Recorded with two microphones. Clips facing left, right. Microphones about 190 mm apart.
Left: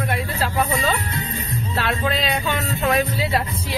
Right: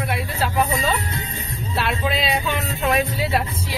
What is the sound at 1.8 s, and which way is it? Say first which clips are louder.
Speech: even; 5° right (ahead or behind).